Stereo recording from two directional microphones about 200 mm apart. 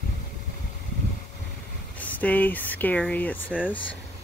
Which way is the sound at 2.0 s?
10° left (ahead or behind).